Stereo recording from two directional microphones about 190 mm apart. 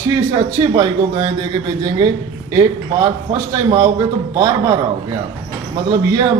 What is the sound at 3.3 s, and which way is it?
A man's voice, 20° right (ahead or behind).